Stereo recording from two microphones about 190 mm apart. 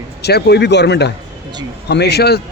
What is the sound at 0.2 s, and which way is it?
Speech, 60° left (ahead or behind).